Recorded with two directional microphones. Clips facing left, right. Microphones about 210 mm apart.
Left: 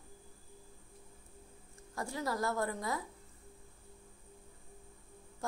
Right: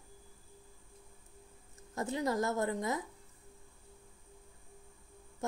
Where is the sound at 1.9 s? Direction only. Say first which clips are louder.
Right 4 dB; 20° right (ahead or behind).